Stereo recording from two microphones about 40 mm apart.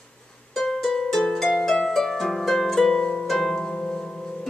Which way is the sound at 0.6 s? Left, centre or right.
Centre.